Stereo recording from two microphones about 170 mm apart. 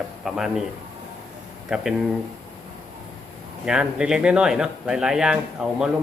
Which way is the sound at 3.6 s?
5° right (ahead or behind).